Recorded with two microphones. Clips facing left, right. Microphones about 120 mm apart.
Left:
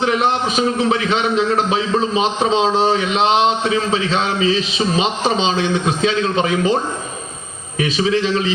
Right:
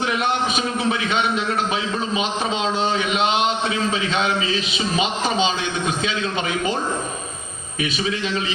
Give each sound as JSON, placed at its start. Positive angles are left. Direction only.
{"t": 0.0, "sound": "a man's voice", "side_deg": 35}
{"t": 7.8, "sound": "a man's voice", "side_deg": 35}